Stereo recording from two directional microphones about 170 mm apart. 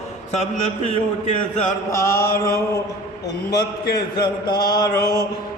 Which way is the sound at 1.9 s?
15° left (ahead or behind).